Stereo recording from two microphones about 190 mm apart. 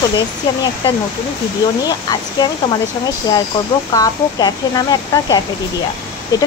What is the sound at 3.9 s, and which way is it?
Speech, 20° left (ahead or behind).